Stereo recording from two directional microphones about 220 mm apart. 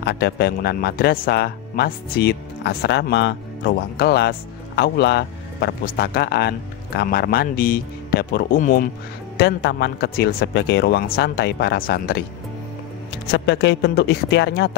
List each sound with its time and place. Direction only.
0.0 s speech: 50° left (ahead or behind)
9.4 s speech: 50° left (ahead or behind)
13.3 s speech: 50° left (ahead or behind)